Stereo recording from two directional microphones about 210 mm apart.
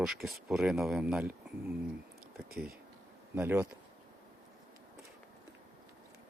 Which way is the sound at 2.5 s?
45° right (ahead or behind).